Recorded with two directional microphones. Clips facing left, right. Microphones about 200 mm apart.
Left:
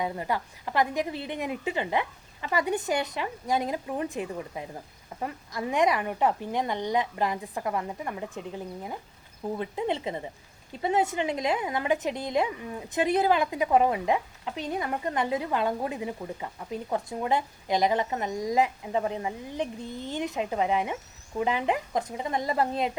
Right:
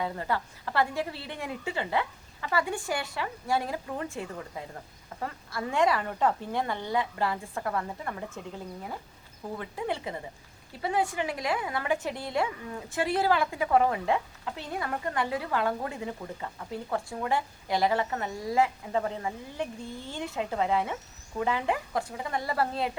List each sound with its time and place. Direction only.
0.0 s a woman's voice: 15° left (ahead or behind)